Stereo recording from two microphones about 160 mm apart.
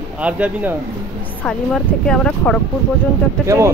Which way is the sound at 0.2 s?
10° right (ahead or behind).